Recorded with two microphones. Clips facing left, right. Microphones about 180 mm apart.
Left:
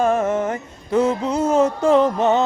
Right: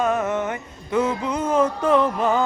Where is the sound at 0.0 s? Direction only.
30° left (ahead or behind).